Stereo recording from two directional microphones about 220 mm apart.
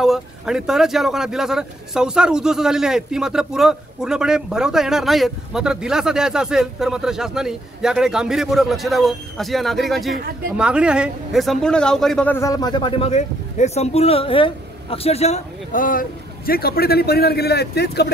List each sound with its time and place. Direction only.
0.0 s a man's voice: centre (ahead or behind); by 18.0 s 45° left (ahead or behind)